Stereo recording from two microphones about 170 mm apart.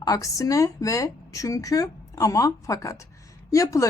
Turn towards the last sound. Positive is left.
turn(degrees=20)  # may be behind; listen again after turning